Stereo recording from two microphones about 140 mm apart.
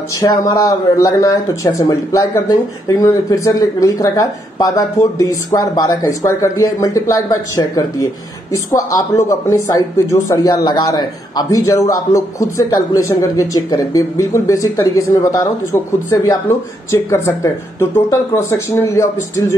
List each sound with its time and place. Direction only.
0.2 s speech: 25° left (ahead or behind)